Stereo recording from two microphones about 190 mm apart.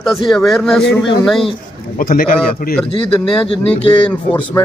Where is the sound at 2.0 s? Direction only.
45° left (ahead or behind).